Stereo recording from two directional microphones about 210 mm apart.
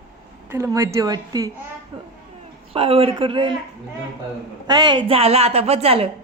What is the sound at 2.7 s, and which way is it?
Speech, 25° right (ahead or behind).